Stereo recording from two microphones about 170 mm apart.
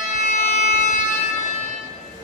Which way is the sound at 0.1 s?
45° left (ahead or behind).